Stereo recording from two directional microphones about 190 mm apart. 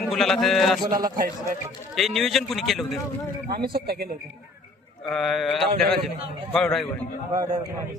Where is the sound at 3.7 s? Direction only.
55° right (ahead or behind).